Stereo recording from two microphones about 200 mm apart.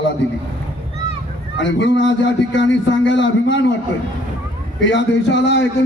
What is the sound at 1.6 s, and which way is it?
A man's voice, 65° left (ahead or behind).